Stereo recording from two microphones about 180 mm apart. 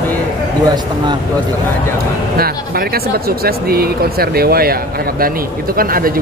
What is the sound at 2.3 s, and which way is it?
Speech, 55° right (ahead or behind).